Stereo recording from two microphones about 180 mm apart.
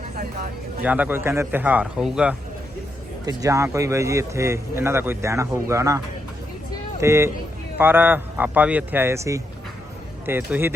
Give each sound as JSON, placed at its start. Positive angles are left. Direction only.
{"t": 0.9, "sound": "a man's voice", "side_deg": -10}
{"t": 3.2, "sound": "a man's voice", "side_deg": -20}
{"t": 7.0, "sound": "a man's voice", "side_deg": -15}